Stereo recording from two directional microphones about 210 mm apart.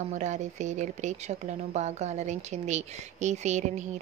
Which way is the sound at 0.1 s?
35° right (ahead or behind).